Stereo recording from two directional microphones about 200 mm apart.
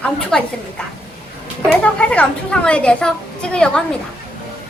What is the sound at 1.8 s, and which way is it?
A woman's voice, 5° left (ahead or behind).